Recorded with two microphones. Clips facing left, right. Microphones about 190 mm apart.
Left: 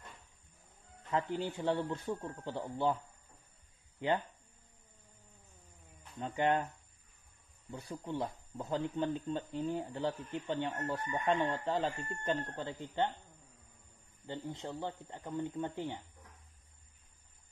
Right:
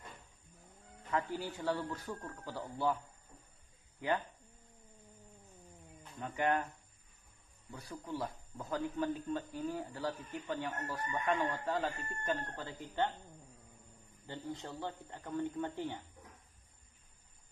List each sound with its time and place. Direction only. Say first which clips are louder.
1.1 s speech: left 2 dB; 25° left (ahead or behind)
4.0 s speech: left 2 dB; 25° left (ahead or behind)
6.1 s speech: left 2 dB; 25° left (ahead or behind)
7.7 s speech: left 3 dB; 25° left (ahead or behind)
14.2 s speech: left 2 dB; 20° left (ahead or behind)